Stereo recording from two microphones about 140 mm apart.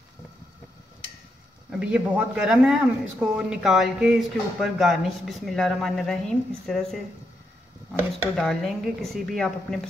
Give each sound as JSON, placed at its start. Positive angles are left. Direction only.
{"t": 1.7, "sound": "speech", "side_deg": -10}
{"t": 8.4, "sound": "speech", "side_deg": 0}